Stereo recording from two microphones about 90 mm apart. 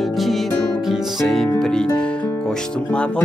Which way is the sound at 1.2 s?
Centre (ahead or behind).